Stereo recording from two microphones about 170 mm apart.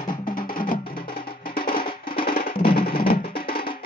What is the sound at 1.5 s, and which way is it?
Music, 55° left (ahead or behind).